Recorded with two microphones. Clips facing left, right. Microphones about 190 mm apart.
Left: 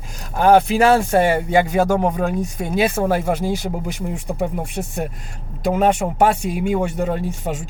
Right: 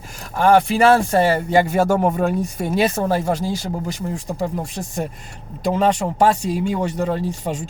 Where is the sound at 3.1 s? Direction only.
10° left (ahead or behind).